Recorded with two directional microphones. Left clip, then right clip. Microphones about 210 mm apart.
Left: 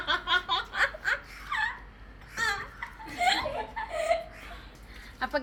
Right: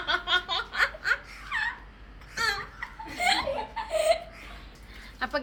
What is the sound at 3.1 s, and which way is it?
Laughter, 30° right (ahead or behind).